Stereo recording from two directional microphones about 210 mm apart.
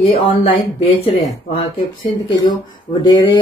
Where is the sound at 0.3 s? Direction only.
25° left (ahead or behind).